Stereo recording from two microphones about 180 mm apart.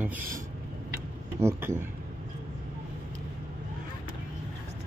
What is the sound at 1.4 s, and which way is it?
Speech, 15° right (ahead or behind).